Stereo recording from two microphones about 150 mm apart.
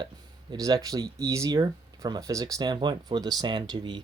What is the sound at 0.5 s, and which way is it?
Speech, 25° right (ahead or behind).